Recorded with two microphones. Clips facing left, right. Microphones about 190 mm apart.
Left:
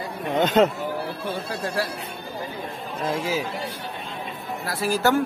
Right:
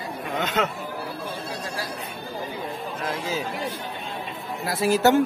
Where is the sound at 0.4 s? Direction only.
35° left (ahead or behind).